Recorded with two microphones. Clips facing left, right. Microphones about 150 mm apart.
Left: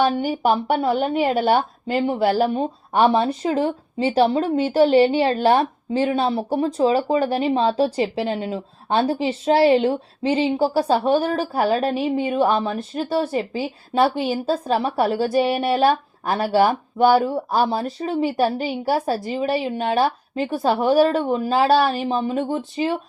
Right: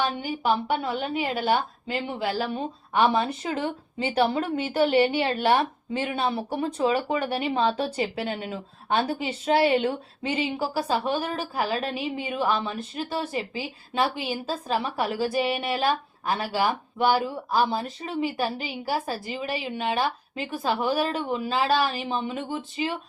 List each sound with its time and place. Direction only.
0.0 s a woman's voice: 45° left (ahead or behind)